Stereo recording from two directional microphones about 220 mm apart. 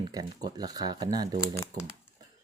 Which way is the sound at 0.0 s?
20° right (ahead or behind).